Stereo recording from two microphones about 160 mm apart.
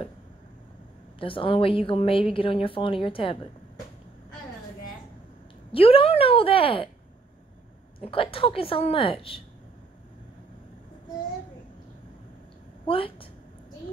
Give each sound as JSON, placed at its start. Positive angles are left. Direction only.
{"t": 1.2, "sound": "a woman's voice", "side_deg": 35}
{"t": 5.7, "sound": "a woman's voice", "side_deg": 35}
{"t": 8.0, "sound": "a woman's voice", "side_deg": 35}
{"t": 12.8, "sound": "a woman's voice", "side_deg": 35}